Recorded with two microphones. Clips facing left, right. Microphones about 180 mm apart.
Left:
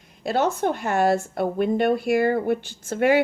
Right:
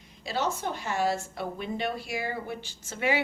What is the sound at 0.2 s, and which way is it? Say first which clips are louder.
A woman's voice: left 8 dB; 55° left (ahead or behind).